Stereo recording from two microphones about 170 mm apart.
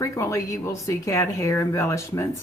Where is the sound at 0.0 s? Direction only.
20° left (ahead or behind).